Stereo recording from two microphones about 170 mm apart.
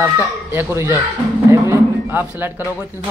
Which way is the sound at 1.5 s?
15° right (ahead or behind).